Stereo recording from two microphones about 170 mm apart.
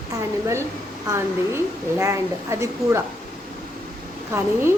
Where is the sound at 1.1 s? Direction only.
15° right (ahead or behind).